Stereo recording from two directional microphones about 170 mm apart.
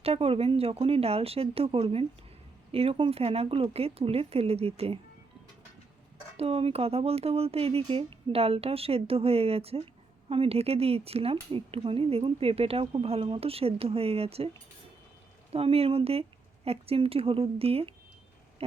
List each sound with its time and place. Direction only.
0.0 s speech: 35° right (ahead or behind)
6.3 s speech: 35° right (ahead or behind)
15.5 s speech: 35° right (ahead or behind)